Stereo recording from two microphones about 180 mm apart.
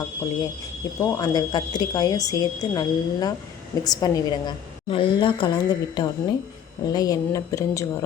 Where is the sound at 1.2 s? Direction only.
20° left (ahead or behind).